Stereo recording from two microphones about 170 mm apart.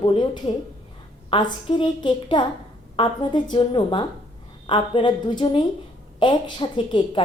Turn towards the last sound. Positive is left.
turn(degrees=30)  # may be behind; listen again after turning